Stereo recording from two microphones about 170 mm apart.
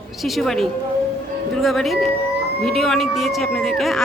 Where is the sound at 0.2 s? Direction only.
Centre (ahead or behind).